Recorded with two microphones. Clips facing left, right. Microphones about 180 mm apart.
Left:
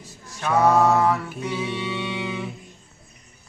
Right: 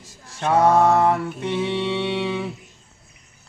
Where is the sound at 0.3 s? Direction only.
30° right (ahead or behind).